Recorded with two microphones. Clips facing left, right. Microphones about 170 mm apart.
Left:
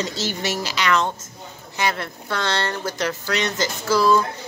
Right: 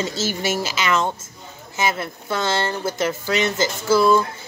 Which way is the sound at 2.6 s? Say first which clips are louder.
Right 2 dB; 25° right (ahead or behind).